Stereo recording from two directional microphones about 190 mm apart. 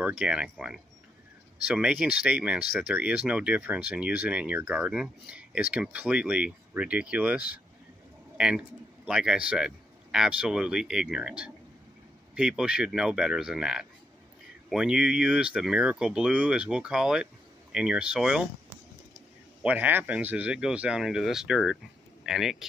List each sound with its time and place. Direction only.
0.0 s a man's voice: 5° right (ahead or behind)
19.6 s speech: 10° right (ahead or behind)